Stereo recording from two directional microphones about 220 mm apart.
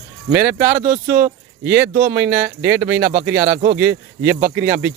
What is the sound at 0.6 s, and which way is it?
Speech, 35° right (ahead or behind).